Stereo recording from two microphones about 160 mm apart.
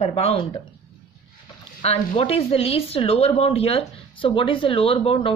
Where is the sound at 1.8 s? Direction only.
40° left (ahead or behind).